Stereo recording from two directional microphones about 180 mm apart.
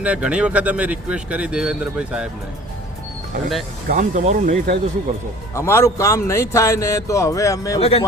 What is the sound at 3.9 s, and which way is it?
Speech, 45° right (ahead or behind).